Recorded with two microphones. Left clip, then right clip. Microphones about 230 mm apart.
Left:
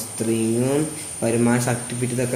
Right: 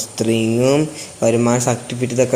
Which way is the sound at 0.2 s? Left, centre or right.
Right.